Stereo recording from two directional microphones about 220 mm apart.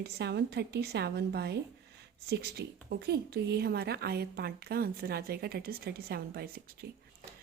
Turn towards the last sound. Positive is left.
turn(degrees=-45)  # may be behind; listen again after turning